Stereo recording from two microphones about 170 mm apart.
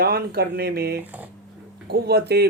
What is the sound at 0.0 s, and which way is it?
Speech, 65° right (ahead or behind).